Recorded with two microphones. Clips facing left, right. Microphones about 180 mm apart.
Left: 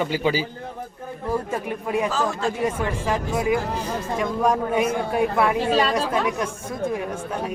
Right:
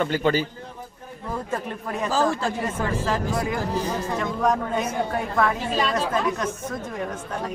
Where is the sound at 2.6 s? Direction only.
10° left (ahead or behind).